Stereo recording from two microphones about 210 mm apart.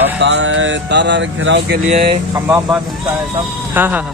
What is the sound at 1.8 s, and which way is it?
Speech, 30° right (ahead or behind).